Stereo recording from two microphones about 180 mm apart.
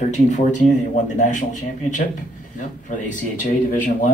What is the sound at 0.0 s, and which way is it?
Speech, 40° left (ahead or behind).